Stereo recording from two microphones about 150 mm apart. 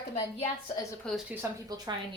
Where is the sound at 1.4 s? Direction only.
15° right (ahead or behind).